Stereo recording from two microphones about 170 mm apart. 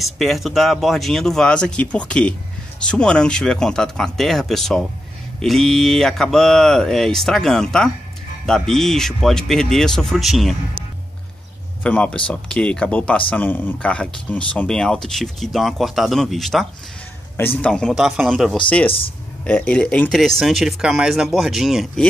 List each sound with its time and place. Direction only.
0.0 s speech: centre (ahead or behind)
11.8 s speech: 5° left (ahead or behind)
18.9 s speech: 35° left (ahead or behind)
19.4 s speech: 10° left (ahead or behind)